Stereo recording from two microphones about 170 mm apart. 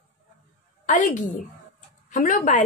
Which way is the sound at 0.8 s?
50° left (ahead or behind).